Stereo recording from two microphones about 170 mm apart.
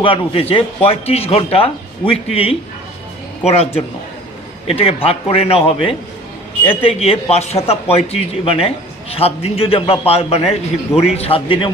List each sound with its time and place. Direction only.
0.0 s a man's voice: 35° left (ahead or behind)